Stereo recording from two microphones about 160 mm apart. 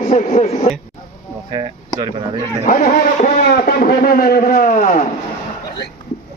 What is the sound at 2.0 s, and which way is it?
Speech, 30° right (ahead or behind).